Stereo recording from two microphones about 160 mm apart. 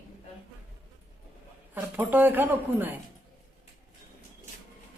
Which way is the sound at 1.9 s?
10° right (ahead or behind).